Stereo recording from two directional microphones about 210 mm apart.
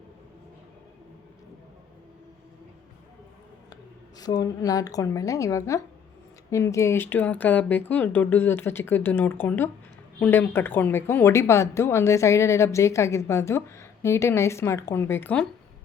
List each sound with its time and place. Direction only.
4.2 s speech: 20° left (ahead or behind)